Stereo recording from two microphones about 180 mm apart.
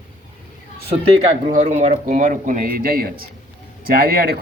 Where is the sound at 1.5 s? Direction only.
45° right (ahead or behind).